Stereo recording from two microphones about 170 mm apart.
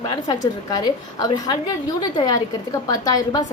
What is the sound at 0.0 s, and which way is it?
A woman's voice, 20° left (ahead or behind).